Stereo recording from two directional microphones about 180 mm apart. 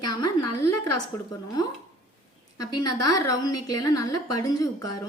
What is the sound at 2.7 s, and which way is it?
A woman's voice, 20° left (ahead or behind).